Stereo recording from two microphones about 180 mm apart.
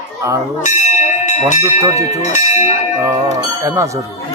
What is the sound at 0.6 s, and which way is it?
Church bell, 40° left (ahead or behind).